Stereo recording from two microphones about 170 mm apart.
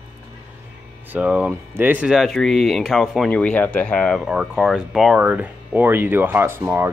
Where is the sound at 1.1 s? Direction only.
10° right (ahead or behind).